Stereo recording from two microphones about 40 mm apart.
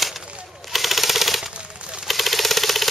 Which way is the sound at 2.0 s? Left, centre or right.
Centre.